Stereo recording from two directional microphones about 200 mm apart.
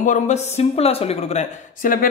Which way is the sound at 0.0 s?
35° left (ahead or behind).